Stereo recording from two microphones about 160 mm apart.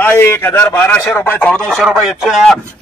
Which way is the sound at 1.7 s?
5° right (ahead or behind).